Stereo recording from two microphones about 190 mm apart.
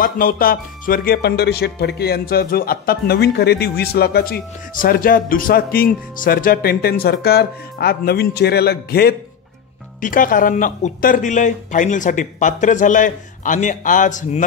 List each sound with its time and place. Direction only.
0.0 s speech: 50° left (ahead or behind)
9.9 s speech: 45° left (ahead or behind)